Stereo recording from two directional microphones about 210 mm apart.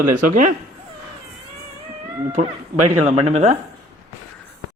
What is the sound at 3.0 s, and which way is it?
Speech, 30° right (ahead or behind).